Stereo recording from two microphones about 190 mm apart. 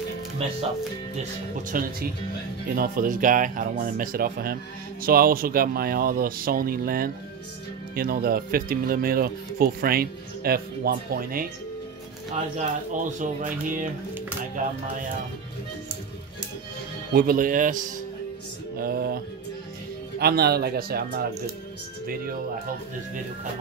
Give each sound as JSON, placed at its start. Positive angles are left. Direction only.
{"t": 1.7, "sound": "speech", "side_deg": -50}
{"t": 12.5, "sound": "speech", "side_deg": -40}
{"t": 17.1, "sound": "speech", "side_deg": -50}
{"t": 18.8, "sound": "speech", "side_deg": -55}
{"t": 20.2, "sound": "speech", "side_deg": -55}